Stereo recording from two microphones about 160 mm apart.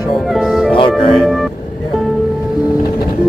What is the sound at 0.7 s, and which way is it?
Music, 30° left (ahead or behind).